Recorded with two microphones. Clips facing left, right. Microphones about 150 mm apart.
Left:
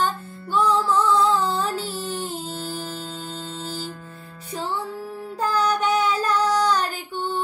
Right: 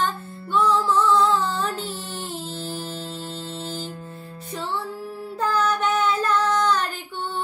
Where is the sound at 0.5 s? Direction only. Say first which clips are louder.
Even; 10° left (ahead or behind).